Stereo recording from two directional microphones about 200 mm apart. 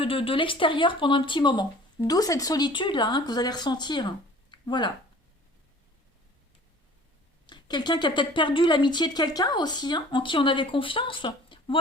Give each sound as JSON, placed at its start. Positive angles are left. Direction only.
{"t": 0.0, "sound": "speech", "side_deg": 25}
{"t": 7.4, "sound": "speech", "side_deg": 20}